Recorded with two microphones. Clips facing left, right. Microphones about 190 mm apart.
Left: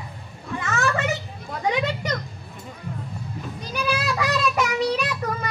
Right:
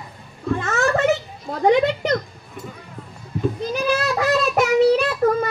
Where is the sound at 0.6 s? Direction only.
45° right (ahead or behind).